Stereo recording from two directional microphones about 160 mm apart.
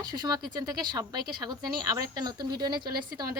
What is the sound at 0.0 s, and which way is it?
A woman's voice, 25° right (ahead or behind).